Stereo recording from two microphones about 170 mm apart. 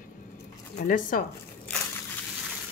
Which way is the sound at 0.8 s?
55° left (ahead or behind).